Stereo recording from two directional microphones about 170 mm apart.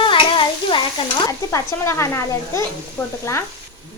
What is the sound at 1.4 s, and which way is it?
Speech, 15° left (ahead or behind).